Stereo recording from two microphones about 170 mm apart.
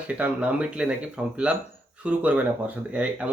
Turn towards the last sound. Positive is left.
turn(degrees=-5)  # may be behind; listen again after turning